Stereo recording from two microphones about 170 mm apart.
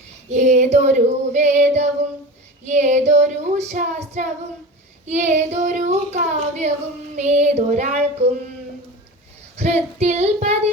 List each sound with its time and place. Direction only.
0.3 s child singing: 45° right (ahead or behind)
9.6 s child singing: 40° right (ahead or behind)